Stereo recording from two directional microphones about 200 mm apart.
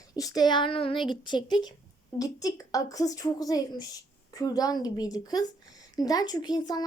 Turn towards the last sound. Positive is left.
turn(degrees=20)  # may be behind; listen again after turning